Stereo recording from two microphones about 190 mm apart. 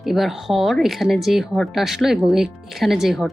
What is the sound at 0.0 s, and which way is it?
Speech, centre (ahead or behind).